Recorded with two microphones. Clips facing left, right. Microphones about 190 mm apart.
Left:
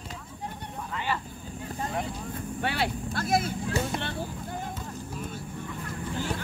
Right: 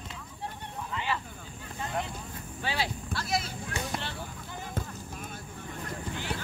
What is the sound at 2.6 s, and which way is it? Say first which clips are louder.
Vehicle: left 3 dB; 60° left (ahead or behind).